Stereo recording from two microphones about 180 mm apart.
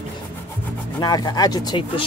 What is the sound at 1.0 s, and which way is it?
Speech, 20° left (ahead or behind).